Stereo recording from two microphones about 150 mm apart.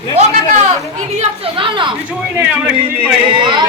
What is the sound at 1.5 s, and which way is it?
Speech, 35° right (ahead or behind).